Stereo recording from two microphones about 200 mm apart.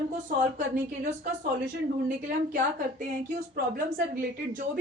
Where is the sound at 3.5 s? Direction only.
45° right (ahead or behind).